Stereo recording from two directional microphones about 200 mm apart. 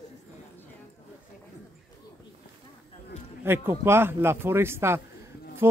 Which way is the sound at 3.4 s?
10° right (ahead or behind).